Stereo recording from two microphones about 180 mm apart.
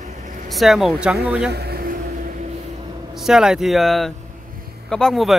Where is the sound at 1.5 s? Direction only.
60° right (ahead or behind).